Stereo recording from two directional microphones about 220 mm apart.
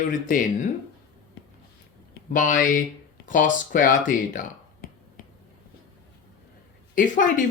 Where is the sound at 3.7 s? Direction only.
40° left (ahead or behind).